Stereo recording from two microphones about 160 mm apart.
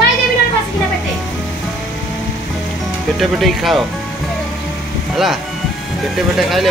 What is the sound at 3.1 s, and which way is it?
Speech, centre (ahead or behind).